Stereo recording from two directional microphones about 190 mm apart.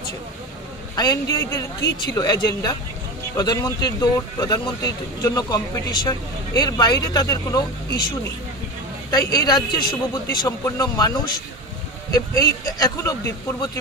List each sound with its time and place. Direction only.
0.9 s speech: 20° left (ahead or behind)
1.8 s speech: 70° left (ahead or behind)
2.1 s speech: 20° left (ahead or behind)
9.1 s speech: 20° left (ahead or behind)